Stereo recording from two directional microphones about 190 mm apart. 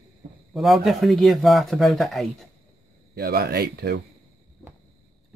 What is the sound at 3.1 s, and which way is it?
Speech, 55° right (ahead or behind).